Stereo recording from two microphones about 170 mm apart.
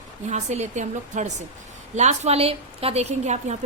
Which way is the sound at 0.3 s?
40° right (ahead or behind).